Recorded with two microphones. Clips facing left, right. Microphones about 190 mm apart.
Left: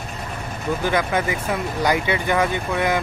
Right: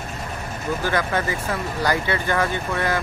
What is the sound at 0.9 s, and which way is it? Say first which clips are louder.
Speech: left 2 dB; 15° left (ahead or behind).